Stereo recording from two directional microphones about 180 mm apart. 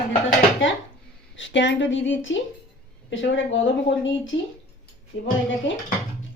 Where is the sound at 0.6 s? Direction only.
90° left.